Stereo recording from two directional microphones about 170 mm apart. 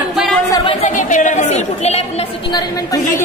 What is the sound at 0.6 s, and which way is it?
Speech, 45° left (ahead or behind).